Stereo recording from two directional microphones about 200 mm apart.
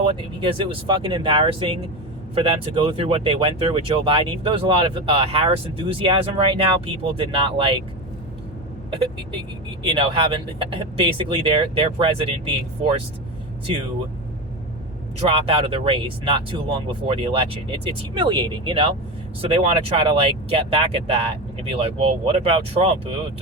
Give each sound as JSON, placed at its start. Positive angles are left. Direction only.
{"t": 0.0, "sound": "speech", "side_deg": -25}
{"t": 8.9, "sound": "speech", "side_deg": -25}
{"t": 15.3, "sound": "speech", "side_deg": -25}